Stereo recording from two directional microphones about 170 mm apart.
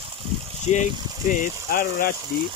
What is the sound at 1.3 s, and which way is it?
Speech, 55° left (ahead or behind).